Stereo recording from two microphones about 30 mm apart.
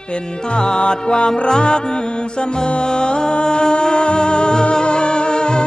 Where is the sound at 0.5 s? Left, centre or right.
Left.